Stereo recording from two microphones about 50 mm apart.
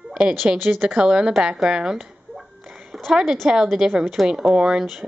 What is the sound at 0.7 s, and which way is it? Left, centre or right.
Speech, right.